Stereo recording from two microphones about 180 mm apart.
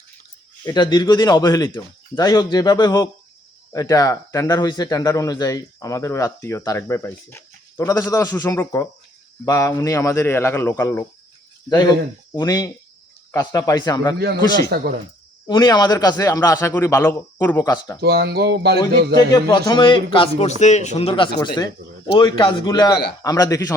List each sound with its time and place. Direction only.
0.6 s speech: 20° left (ahead or behind)
12.4 s speech: 20° left (ahead or behind)
14.2 s speech: 60° right (ahead or behind)
15.4 s speech: 25° left (ahead or behind)
18.0 s speech: 65° right (ahead or behind)
19.3 s speech: 25° left (ahead or behind)